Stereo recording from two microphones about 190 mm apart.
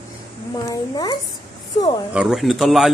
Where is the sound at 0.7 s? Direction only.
20° left (ahead or behind).